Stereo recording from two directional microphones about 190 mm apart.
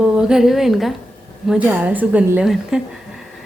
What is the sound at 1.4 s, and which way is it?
A woman's voice, 5° right (ahead or behind).